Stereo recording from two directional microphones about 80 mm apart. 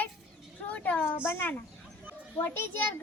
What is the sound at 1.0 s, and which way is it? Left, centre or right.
A child's voice, left.